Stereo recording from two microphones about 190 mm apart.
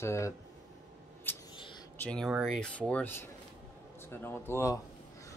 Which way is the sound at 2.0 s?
5° left (ahead or behind).